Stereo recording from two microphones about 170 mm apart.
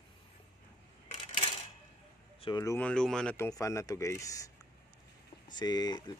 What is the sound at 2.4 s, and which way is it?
Speech, 20° left (ahead or behind).